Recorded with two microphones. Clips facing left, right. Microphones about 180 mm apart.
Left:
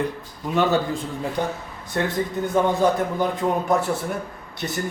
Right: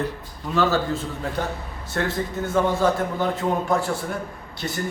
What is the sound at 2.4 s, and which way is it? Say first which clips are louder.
Speech: left 2 dB; 15° left (ahead or behind).